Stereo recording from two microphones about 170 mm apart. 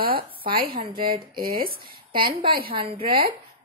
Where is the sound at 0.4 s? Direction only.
60° right (ahead or behind).